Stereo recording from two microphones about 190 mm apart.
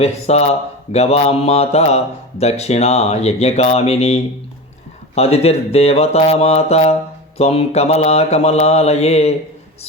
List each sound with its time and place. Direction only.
0.0 s speech: 35° left (ahead or behind)